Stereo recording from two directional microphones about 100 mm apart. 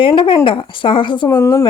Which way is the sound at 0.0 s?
60° left (ahead or behind).